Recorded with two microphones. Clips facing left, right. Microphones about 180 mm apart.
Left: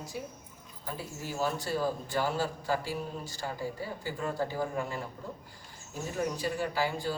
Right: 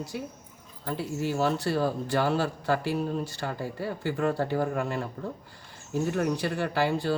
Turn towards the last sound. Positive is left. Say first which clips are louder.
# right 5 dB
turn(degrees=-65)  # may be behind; listen again after turning